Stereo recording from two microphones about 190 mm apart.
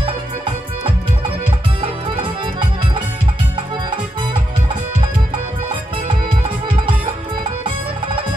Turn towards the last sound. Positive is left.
turn(degrees=-25)  # may be behind; listen again after turning